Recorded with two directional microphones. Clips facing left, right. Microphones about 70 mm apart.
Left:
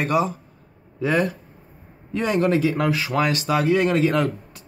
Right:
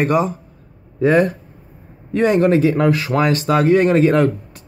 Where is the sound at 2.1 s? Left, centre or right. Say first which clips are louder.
Right 6 dB; right.